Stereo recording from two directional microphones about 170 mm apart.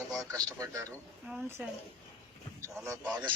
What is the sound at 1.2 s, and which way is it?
Speech, 5° right (ahead or behind).